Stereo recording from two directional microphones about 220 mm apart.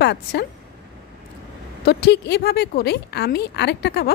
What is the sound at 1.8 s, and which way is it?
Speech, 50° left (ahead or behind).